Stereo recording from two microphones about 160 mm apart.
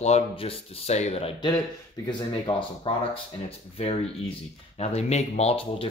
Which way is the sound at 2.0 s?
30° left (ahead or behind).